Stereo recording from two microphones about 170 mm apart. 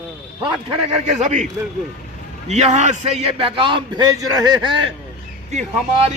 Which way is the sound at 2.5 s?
40° right (ahead or behind).